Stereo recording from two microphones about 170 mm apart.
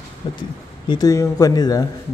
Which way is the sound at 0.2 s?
30° left (ahead or behind).